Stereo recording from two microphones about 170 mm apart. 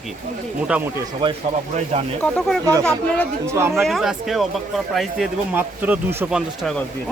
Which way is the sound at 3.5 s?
15° right (ahead or behind).